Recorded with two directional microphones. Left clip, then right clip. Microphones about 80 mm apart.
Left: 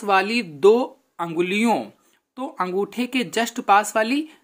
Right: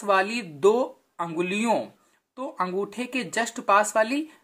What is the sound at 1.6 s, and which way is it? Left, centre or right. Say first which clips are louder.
Speech: left 3 dB; centre.